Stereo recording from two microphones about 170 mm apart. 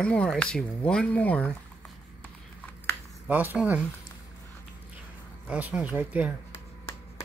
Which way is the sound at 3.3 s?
10° right (ahead or behind).